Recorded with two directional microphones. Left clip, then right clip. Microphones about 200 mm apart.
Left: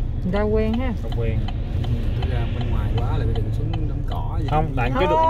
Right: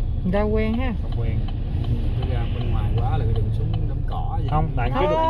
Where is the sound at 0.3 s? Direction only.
25° right (ahead or behind).